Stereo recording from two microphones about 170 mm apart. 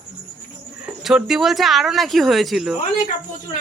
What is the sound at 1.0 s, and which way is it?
Speech, centre (ahead or behind).